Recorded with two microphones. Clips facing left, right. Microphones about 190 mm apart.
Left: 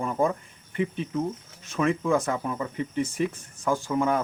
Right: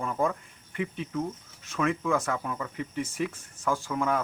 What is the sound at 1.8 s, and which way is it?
Speech, 25° left (ahead or behind).